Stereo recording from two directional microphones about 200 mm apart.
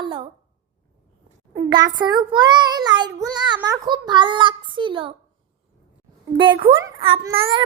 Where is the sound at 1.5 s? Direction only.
20° right (ahead or behind).